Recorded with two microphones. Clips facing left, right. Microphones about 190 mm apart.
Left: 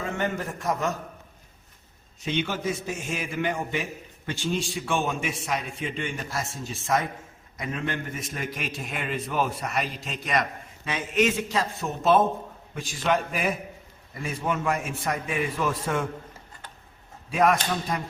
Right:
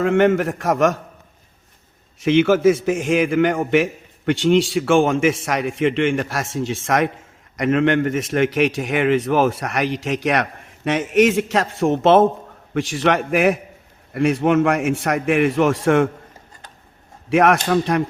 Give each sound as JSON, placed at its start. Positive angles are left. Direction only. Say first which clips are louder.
{"t": 0.0, "sound": "a man's voice", "louder": "right 13 dB", "side_deg": -85}
{"t": 2.2, "sound": "a man's voice", "louder": "right 14 dB", "side_deg": -90}
{"t": 17.2, "sound": "a man's voice", "louder": "right 7 dB", "side_deg": -80}